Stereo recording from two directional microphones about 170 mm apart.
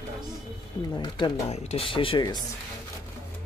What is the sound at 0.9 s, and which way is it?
Speech, 25° left (ahead or behind).